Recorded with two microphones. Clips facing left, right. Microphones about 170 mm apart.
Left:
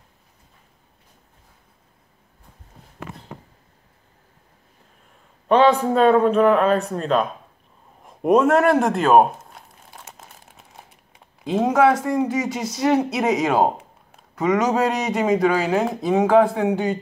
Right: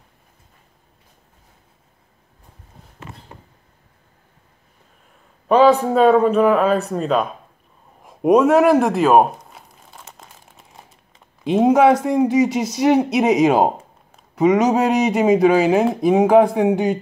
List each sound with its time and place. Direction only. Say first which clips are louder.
5.5 s a man's voice: right 3 dB; 5° right (ahead or behind)
8.0 s a sound: right 3 dB; centre (ahead or behind)
11.4 s speech: right 4 dB; 15° right (ahead or behind)